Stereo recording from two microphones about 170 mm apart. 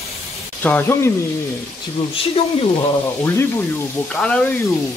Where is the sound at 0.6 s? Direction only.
10° left (ahead or behind).